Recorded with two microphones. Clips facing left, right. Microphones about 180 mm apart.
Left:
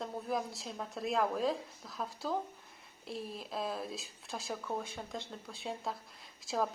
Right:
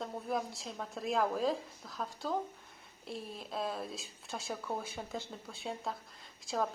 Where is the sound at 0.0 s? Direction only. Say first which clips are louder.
Even; centre (ahead or behind).